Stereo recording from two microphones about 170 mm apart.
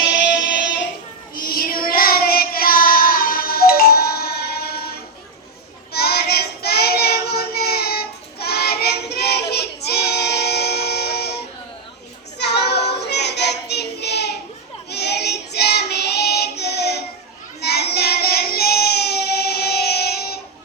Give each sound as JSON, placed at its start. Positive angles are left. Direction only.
{"t": 1.4, "sound": "child singing", "side_deg": 60}